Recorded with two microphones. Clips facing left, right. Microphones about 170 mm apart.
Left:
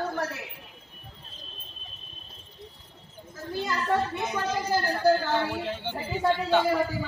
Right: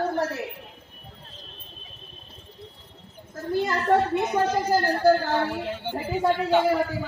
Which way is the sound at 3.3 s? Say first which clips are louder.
Right 6 dB; 55° right (ahead or behind).